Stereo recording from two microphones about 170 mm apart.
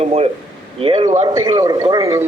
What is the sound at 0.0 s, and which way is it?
A man's voice, 35° right (ahead or behind).